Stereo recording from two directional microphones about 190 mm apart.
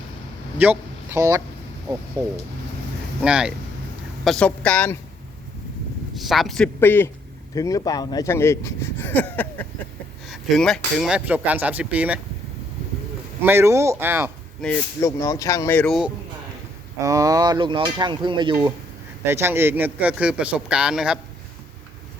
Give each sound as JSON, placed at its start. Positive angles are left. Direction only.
{"t": 0.6, "sound": "speech", "side_deg": -10}
{"t": 2.2, "sound": "speech", "side_deg": 10}
{"t": 3.2, "sound": "a man's voice", "side_deg": -5}
{"t": 6.1, "sound": "a man's voice", "side_deg": 0}
{"t": 13.4, "sound": "speech", "side_deg": -10}
{"t": 14.6, "sound": "speech", "side_deg": 10}
{"t": 17.0, "sound": "speech", "side_deg": -15}
{"t": 19.2, "sound": "speech", "side_deg": -15}